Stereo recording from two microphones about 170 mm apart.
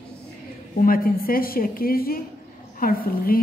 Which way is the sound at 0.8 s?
60° left (ahead or behind).